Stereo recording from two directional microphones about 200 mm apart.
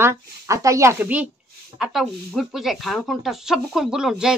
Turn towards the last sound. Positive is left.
turn(degrees=-5)  # may be behind; listen again after turning